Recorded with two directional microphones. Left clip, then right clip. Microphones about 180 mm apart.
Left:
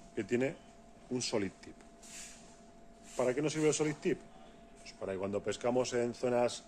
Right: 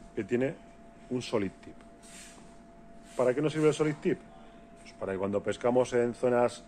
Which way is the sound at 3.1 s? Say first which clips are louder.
Right 5 dB; 15° left (ahead or behind).